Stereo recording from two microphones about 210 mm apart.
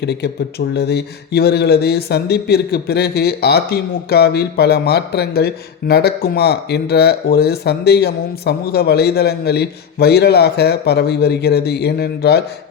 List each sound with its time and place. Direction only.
0.0 s speech: 55° left (ahead or behind)